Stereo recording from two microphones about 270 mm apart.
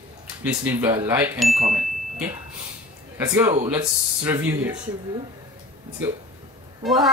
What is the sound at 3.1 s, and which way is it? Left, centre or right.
Speech, centre.